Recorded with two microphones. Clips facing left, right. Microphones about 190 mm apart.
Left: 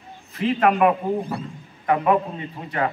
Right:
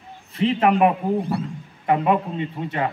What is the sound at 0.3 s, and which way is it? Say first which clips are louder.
Speech: right 1 dB; 25° right (ahead or behind).